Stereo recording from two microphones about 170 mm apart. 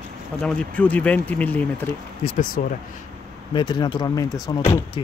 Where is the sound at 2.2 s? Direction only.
50° left (ahead or behind).